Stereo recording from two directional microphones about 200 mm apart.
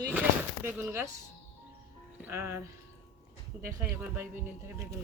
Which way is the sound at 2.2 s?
10° right (ahead or behind).